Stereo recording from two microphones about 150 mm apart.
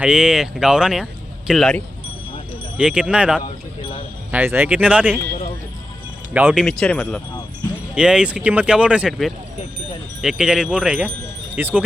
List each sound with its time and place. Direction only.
0.0 s speech: 5° right (ahead or behind)
3.4 s a sound: 35° left (ahead or behind)
4.3 s speech: 15° right (ahead or behind)
6.3 s speech: 5° right (ahead or behind)
7.9 s speech: 5° right (ahead or behind)